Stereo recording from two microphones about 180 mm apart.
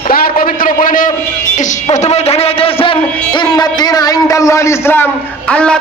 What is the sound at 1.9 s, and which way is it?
A man's voice, 35° left (ahead or behind).